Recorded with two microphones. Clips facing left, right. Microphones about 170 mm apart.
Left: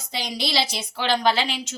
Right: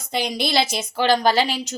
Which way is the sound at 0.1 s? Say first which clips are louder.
Right 5 dB; 55° right (ahead or behind).